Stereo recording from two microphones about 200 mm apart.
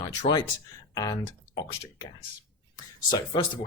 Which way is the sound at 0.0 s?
20° left (ahead or behind).